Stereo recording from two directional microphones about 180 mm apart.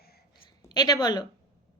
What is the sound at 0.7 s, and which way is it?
Speech, 20° left (ahead or behind).